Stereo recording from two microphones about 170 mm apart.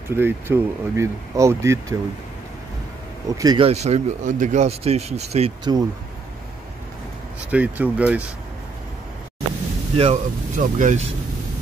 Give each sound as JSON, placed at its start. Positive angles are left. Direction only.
{"t": 0.1, "sound": "speech", "side_deg": -15}
{"t": 3.3, "sound": "speech", "side_deg": -20}
{"t": 3.6, "sound": "speech", "side_deg": -40}
{"t": 5.6, "sound": "speech", "side_deg": -25}
{"t": 7.5, "sound": "speech", "side_deg": -10}
{"t": 9.9, "sound": "speech", "side_deg": -35}
{"t": 10.6, "sound": "speech", "side_deg": -50}